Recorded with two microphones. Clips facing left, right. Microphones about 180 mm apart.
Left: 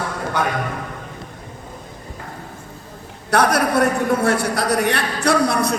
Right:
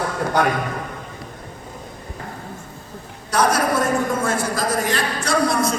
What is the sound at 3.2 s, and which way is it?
A man's voice, 65° left (ahead or behind).